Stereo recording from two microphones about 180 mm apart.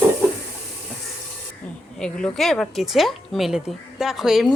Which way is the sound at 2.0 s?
5° left (ahead or behind).